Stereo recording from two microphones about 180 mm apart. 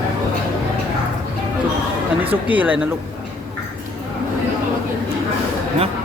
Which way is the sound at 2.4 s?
10° right (ahead or behind).